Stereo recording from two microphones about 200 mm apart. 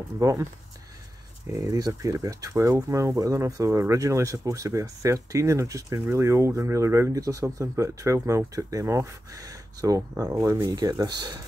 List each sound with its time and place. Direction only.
0.2 s speech: 15° right (ahead or behind)
1.5 s speech: 15° right (ahead or behind)